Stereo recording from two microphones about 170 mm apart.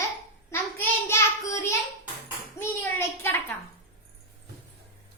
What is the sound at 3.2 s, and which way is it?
Child singing, 15° left (ahead or behind).